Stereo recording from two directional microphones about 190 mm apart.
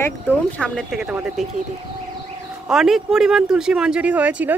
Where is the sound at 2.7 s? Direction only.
Centre (ahead or behind).